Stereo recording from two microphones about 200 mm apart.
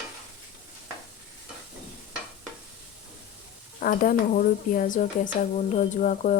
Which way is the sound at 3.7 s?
45° left (ahead or behind).